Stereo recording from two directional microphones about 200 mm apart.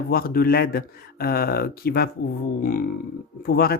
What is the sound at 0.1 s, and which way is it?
Speech, 50° left (ahead or behind).